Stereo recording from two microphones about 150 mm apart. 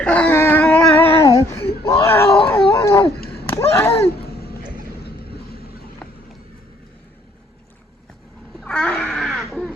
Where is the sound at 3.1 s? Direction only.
90° left.